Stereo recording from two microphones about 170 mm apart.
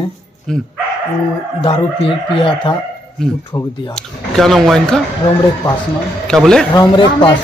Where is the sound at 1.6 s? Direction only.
35° left (ahead or behind).